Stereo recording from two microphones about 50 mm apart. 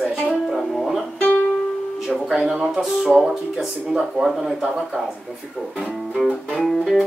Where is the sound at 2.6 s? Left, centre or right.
Centre.